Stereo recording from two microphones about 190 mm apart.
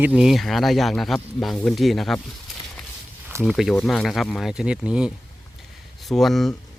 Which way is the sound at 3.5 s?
Centre (ahead or behind).